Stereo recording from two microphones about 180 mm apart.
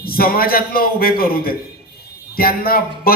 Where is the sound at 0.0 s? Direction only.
55° left (ahead or behind).